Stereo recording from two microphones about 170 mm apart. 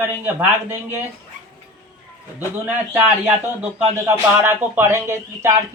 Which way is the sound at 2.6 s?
5° right (ahead or behind).